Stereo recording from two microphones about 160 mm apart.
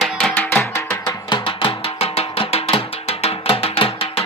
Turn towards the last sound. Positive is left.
turn(degrees=35)  # may be behind; listen again after turning